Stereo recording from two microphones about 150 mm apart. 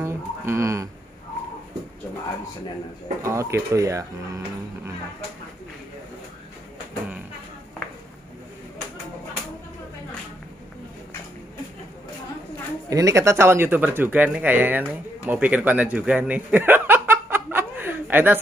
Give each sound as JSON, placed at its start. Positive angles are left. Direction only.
{"t": 0.0, "sound": "a sound", "side_deg": -20}
{"t": 3.2, "sound": "speech", "side_deg": -20}
{"t": 12.9, "sound": "speech", "side_deg": -20}